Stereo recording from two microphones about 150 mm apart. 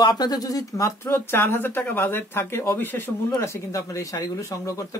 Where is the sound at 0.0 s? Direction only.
30° left (ahead or behind).